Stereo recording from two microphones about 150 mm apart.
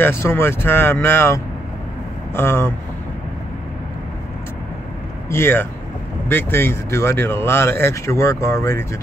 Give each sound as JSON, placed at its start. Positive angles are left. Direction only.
{"t": 0.0, "sound": "speech", "side_deg": 15}
{"t": 5.3, "sound": "speech", "side_deg": 15}